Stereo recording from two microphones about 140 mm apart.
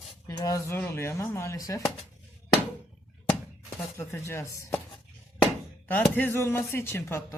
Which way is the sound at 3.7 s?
20° left (ahead or behind).